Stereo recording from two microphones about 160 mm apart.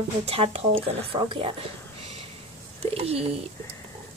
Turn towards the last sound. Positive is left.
turn(degrees=-40)  # may be behind; listen again after turning